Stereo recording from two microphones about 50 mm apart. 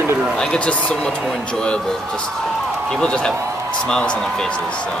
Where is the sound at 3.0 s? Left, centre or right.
Centre.